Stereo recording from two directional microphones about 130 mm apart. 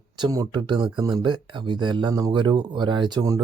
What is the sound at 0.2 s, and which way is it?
Speech, 30° right (ahead or behind).